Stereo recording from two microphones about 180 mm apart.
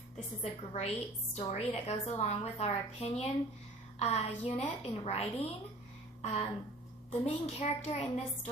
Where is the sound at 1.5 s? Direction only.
35° left (ahead or behind).